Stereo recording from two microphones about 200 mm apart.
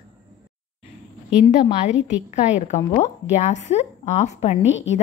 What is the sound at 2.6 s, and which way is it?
Speech, 35° left (ahead or behind).